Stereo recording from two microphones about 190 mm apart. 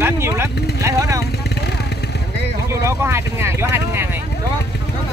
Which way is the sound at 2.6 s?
15° right (ahead or behind).